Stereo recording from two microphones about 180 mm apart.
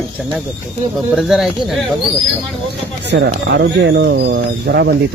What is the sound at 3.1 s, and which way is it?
Speech, 65° right (ahead or behind).